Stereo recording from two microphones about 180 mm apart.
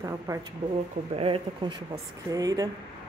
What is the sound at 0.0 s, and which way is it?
Speech, 20° right (ahead or behind).